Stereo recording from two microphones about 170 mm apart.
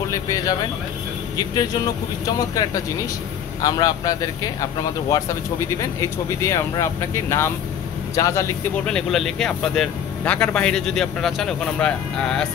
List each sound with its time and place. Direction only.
0.1 s speech: 20° left (ahead or behind)
3.6 s speech: 20° left (ahead or behind)
5.8 s speech: 20° left (ahead or behind)
8.8 s speech: 5° left (ahead or behind)